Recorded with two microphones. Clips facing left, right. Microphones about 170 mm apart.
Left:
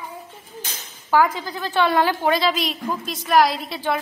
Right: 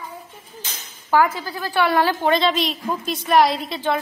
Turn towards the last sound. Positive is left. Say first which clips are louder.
# right 1 dB
turn(degrees=0)  # may be behind; listen again after turning